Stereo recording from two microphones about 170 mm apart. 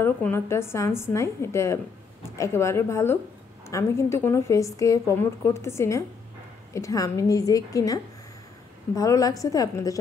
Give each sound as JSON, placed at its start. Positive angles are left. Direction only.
{"t": 0.0, "sound": "a woman's voice", "side_deg": 15}